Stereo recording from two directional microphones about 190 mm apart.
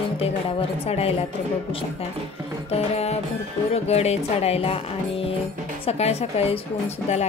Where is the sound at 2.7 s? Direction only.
35° left (ahead or behind).